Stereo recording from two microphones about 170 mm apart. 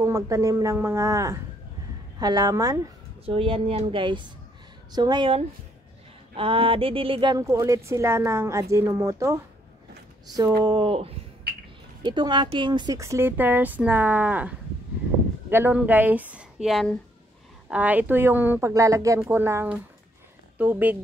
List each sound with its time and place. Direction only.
0.0 s speech: 20° right (ahead or behind)
3.3 s a woman's voice: 30° right (ahead or behind); by 9.4 s 15° right (ahead or behind)
10.6 s a woman's voice: 25° right (ahead or behind); by 14.5 s 10° right (ahead or behind)
15.5 s speech: 10° right (ahead or behind)